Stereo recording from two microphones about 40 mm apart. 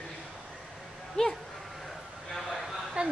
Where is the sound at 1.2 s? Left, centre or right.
Left.